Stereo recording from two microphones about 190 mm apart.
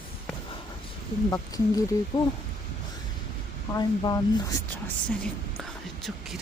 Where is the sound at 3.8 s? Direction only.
20° left (ahead or behind).